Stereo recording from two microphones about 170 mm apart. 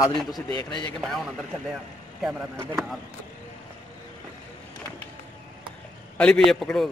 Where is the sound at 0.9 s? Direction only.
Centre (ahead or behind).